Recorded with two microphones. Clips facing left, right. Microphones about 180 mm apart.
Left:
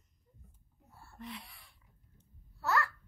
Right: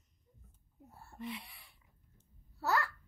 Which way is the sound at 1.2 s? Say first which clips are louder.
Right 3 dB; centre (ahead or behind).